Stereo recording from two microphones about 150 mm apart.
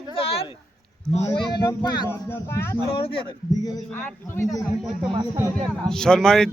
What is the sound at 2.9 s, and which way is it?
Speech, 40° left (ahead or behind).